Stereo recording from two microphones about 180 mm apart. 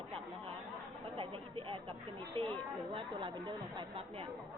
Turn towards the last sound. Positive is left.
turn(degrees=-30)  # may be behind; listen again after turning